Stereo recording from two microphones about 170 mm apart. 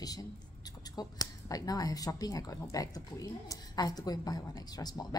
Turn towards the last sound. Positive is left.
turn(degrees=20)  # may be behind; listen again after turning